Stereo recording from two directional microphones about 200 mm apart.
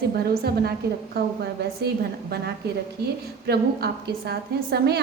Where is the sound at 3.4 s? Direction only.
55° right (ahead or behind).